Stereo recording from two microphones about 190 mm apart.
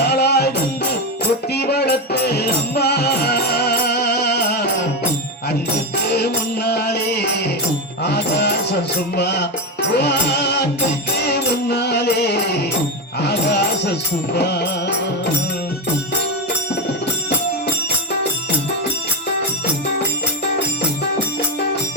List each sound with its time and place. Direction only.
0.0 s music: 60° left (ahead or behind)
6.1 s music: 60° left (ahead or behind)